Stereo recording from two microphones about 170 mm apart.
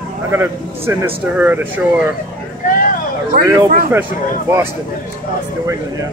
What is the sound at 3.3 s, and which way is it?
Speech, 55° right (ahead or behind).